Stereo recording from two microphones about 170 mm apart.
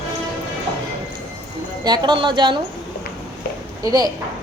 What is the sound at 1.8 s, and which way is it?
Speech, 25° right (ahead or behind).